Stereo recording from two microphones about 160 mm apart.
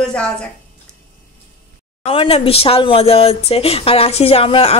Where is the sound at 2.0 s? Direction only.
35° left (ahead or behind).